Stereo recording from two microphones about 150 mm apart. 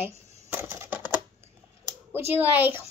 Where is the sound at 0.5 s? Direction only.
15° right (ahead or behind).